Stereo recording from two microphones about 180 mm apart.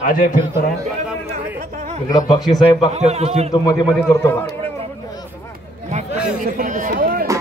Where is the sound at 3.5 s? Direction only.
20° left (ahead or behind).